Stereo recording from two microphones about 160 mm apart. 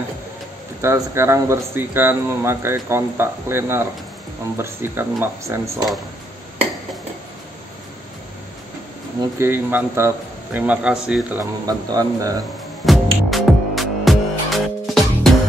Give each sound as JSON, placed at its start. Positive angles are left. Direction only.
{"t": 0.7, "sound": "speech", "side_deg": -15}
{"t": 9.4, "sound": "speech", "side_deg": -15}
{"t": 11.3, "sound": "speech", "side_deg": -25}
{"t": 12.8, "sound": "music", "side_deg": 0}